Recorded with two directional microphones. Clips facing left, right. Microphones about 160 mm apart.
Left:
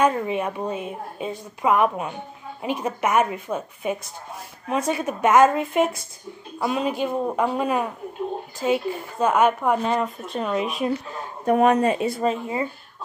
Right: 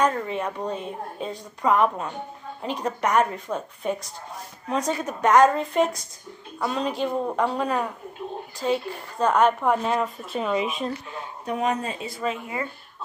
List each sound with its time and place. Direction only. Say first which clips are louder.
0.0 s a woman's voice: left 3 dB; 15° left (ahead or behind)
11.1 s a man's voice: left 8 dB; 50° left (ahead or behind)